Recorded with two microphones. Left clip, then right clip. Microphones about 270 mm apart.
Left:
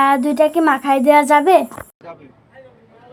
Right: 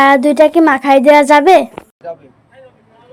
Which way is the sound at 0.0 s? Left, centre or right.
Right.